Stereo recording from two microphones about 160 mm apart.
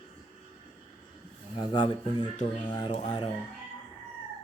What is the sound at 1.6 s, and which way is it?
Speech, 30° left (ahead or behind).